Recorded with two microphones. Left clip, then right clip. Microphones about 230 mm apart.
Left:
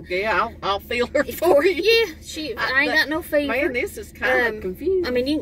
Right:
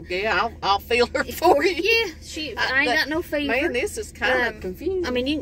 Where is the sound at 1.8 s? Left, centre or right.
Centre.